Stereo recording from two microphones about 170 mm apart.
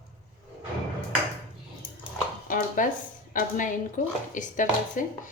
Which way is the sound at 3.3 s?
50° left (ahead or behind).